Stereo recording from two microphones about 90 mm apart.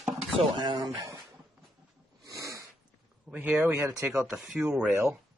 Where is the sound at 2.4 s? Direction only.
35° right (ahead or behind).